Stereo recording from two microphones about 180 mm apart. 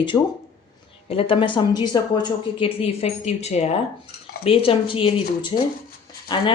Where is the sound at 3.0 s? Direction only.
35° left (ahead or behind).